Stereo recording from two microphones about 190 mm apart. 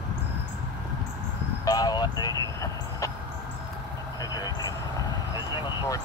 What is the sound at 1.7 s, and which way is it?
Vehicle, 20° left (ahead or behind).